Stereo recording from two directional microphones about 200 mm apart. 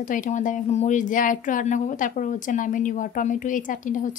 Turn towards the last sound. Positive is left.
turn(degrees=40)  # may be behind; listen again after turning